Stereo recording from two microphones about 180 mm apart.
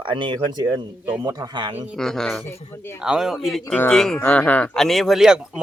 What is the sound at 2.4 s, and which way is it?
Speech, 15° left (ahead or behind).